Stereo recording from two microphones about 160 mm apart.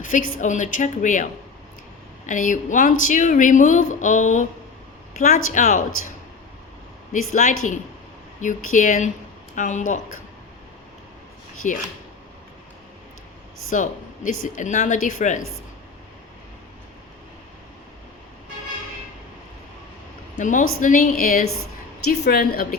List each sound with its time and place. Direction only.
0.0 s speech: 55° left (ahead or behind)
7.1 s speech: 50° left (ahead or behind)
11.6 s speech: 55° left (ahead or behind)
13.7 s speech: 55° left (ahead or behind)
20.4 s a woman's voice: 55° left (ahead or behind)
22.1 s a woman's voice: 80° left